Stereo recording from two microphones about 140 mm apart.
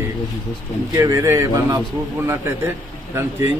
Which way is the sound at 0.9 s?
20° right (ahead or behind).